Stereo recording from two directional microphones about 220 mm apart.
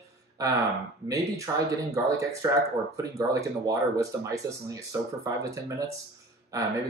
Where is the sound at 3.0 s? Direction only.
15° right (ahead or behind).